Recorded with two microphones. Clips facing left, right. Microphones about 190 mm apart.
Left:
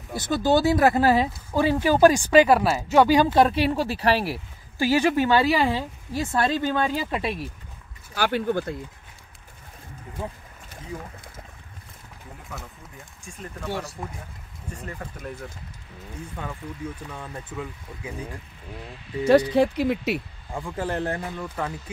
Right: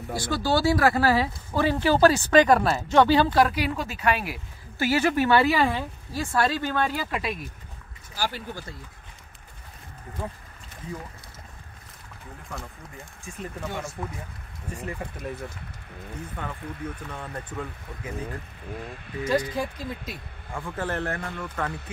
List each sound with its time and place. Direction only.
0.1 s speech: 20° left (ahead or behind)
3.3 s speech: 25° left (ahead or behind)
4.7 s speech: 15° left (ahead or behind)
7.1 s speech: 30° left (ahead or behind)
8.1 s speech: 60° left (ahead or behind)
12.4 s speech: centre (ahead or behind)
14.8 s speech: 5° right (ahead or behind)
16.3 s speech: 10° left (ahead or behind)
19.2 s speech: 70° left (ahead or behind)
20.5 s speech: 10° left (ahead or behind)